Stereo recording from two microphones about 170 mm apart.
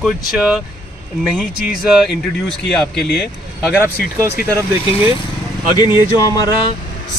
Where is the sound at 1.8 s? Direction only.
Centre (ahead or behind).